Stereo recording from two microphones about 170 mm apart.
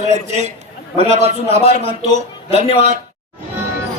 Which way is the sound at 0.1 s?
40° right (ahead or behind).